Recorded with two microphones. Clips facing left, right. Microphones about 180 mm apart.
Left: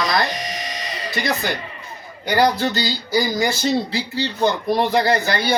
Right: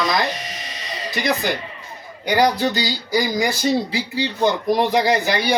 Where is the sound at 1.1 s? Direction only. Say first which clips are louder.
Right 2 dB; 15° right (ahead or behind).